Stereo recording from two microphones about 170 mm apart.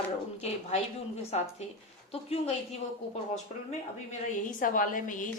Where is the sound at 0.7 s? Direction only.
40° left (ahead or behind).